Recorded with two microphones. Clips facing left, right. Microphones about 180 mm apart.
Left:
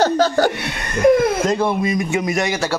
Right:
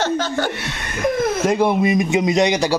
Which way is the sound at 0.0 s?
35° left (ahead or behind).